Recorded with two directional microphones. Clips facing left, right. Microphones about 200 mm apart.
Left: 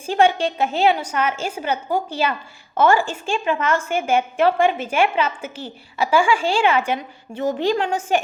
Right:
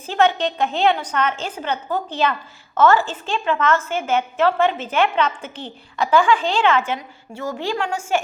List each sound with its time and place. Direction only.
0.0 s a woman's voice: 10° left (ahead or behind)